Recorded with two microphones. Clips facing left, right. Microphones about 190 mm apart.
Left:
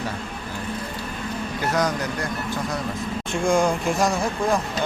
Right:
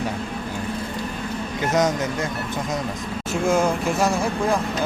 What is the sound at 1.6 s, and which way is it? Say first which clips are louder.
Speech: right 3 dB; 20° right (ahead or behind).